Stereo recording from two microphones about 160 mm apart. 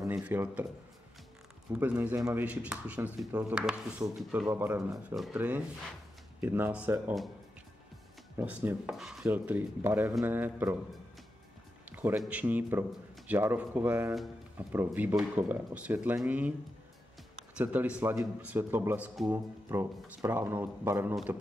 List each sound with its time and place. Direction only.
0.0 s speech: 15° right (ahead or behind)
1.7 s speech: 15° right (ahead or behind)
2.4 s speech: 10° right (ahead or behind)
5.1 s speech: centre (ahead or behind)
6.4 s speech: 15° right (ahead or behind)
8.4 s speech: 10° right (ahead or behind)
11.8 s music: 10° right (ahead or behind)
12.2 s speech: 10° right (ahead or behind)
17.6 s speech: 10° right (ahead or behind)